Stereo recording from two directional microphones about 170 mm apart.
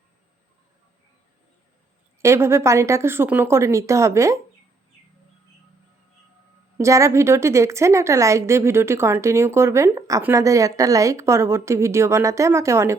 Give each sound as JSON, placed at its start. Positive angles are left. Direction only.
{"t": 2.2, "sound": "a woman's voice", "side_deg": -15}
{"t": 6.7, "sound": "a woman's voice", "side_deg": -15}